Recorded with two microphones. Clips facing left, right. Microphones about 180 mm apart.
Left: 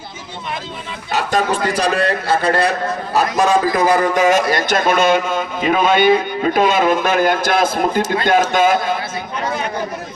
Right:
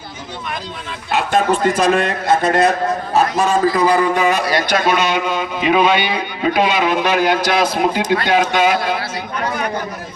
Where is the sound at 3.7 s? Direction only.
45° left (ahead or behind).